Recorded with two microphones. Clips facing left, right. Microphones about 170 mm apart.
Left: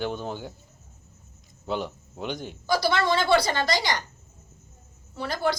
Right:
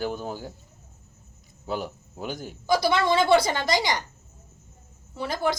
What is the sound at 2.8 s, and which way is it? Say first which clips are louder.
A woman's voice: right 2 dB; 20° right (ahead or behind).